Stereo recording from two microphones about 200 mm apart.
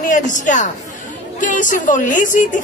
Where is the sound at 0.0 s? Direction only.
40° left (ahead or behind).